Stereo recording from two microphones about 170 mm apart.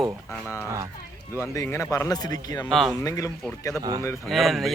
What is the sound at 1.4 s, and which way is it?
Speech, 15° left (ahead or behind).